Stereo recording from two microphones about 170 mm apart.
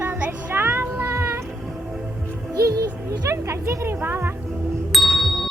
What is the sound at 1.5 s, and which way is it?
Music, centre (ahead or behind).